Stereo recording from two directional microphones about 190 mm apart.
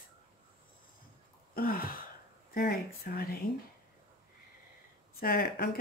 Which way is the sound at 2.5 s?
55° left (ahead or behind).